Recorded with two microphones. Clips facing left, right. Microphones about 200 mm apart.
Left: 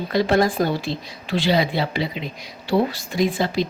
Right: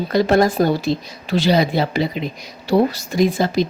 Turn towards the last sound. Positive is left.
turn(degrees=-45)  # may be behind; listen again after turning